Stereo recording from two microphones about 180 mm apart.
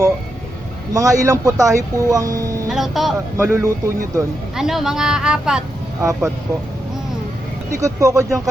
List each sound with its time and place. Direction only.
0.9 s speech: 20° right (ahead or behind)
2.6 s speech: centre (ahead or behind)
3.4 s speech: 15° right (ahead or behind)
4.5 s speech: centre (ahead or behind)
6.0 s speech: 15° right (ahead or behind)
7.7 s speech: 15° right (ahead or behind)